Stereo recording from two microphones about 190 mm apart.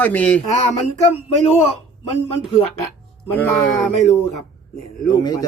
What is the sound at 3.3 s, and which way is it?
Speech, 10° left (ahead or behind).